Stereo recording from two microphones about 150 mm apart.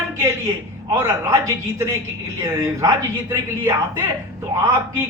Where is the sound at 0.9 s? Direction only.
15° right (ahead or behind).